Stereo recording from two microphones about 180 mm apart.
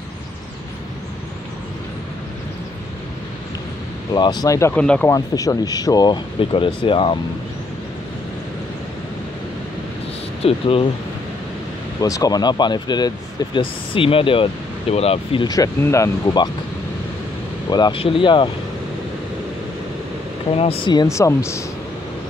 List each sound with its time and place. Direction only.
4.1 s speech: 20° left (ahead or behind); by 5.1 s 5° left (ahead or behind)
5.1 s speech: 20° left (ahead or behind)
10.4 s speech: 30° left (ahead or behind)
12.0 s speech: 20° left (ahead or behind)
15.4 s speech: 20° left (ahead or behind)
17.6 s speech: 25° left (ahead or behind)
20.5 s speech: 30° left (ahead or behind)